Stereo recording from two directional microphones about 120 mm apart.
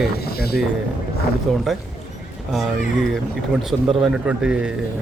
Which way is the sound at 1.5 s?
Centre (ahead or behind).